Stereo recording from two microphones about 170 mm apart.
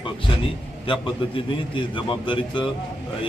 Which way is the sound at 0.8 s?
30° left (ahead or behind).